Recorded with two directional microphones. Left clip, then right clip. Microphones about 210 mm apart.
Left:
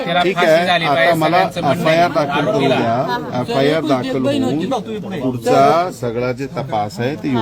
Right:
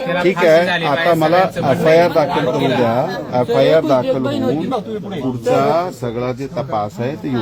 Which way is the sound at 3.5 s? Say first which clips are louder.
Right 3 dB; 15° right (ahead or behind).